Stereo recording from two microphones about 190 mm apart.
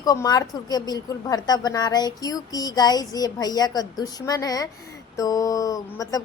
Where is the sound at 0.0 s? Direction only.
20° left (ahead or behind).